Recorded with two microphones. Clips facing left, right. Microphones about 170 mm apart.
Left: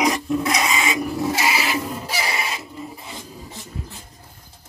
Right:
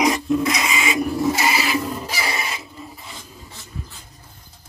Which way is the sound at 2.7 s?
15° left (ahead or behind).